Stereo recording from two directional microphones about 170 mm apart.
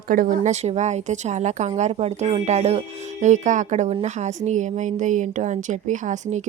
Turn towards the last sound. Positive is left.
turn(degrees=-45)  # may be behind; listen again after turning